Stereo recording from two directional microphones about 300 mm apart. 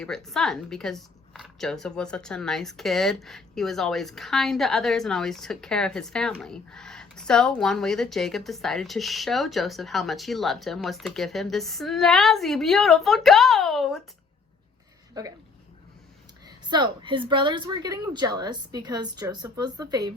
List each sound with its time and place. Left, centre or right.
0.3 s a woman's voice: centre
15.2 s a woman's voice: centre
16.6 s a woman's voice: centre